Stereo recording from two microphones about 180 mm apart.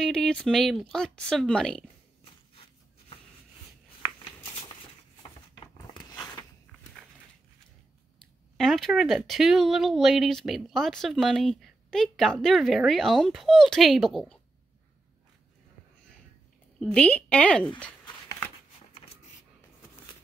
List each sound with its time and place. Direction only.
0.0 s speech: 5° left (ahead or behind)
6.1 s a sound: 20° left (ahead or behind)
8.5 s speech: centre (ahead or behind)
16.8 s speech: 5° left (ahead or behind)